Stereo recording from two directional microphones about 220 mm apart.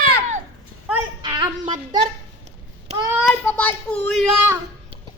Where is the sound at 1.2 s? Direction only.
20° right (ahead or behind).